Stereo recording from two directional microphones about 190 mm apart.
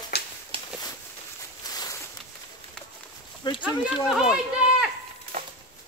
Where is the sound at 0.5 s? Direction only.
30° right (ahead or behind).